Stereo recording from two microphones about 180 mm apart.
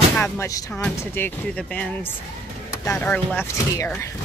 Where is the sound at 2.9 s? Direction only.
10° left (ahead or behind).